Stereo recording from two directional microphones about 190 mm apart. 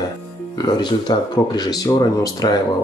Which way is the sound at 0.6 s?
25° left (ahead or behind).